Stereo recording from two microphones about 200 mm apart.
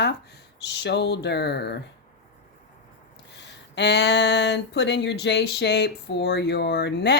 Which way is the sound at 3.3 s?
60° left (ahead or behind).